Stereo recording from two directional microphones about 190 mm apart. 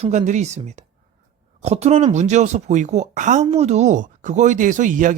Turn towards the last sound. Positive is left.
turn(degrees=-45)  # may be behind; listen again after turning